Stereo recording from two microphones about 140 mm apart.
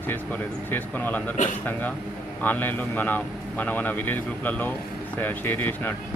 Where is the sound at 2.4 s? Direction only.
10° left (ahead or behind).